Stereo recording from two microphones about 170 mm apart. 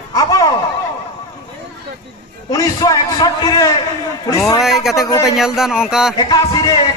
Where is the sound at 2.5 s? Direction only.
20° left (ahead or behind).